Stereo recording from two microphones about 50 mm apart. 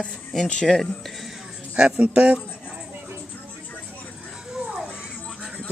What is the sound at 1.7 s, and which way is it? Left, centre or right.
Speech, right.